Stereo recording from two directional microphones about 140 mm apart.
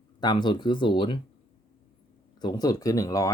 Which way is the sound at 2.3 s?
30° left (ahead or behind).